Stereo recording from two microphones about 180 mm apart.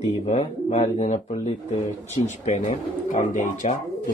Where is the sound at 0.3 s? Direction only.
35° left (ahead or behind).